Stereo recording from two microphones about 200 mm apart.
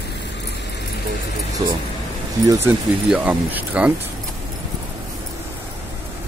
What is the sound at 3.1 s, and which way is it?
Speech, 5° right (ahead or behind).